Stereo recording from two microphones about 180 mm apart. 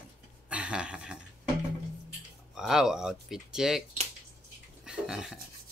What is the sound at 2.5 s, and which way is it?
Speech, 5° right (ahead or behind).